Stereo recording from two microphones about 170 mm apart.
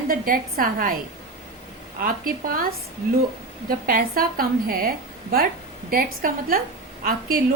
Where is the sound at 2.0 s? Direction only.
60° right (ahead or behind).